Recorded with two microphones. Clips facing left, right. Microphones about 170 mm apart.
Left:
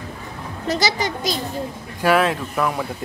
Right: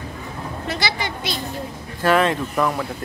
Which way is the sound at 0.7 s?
40° left (ahead or behind).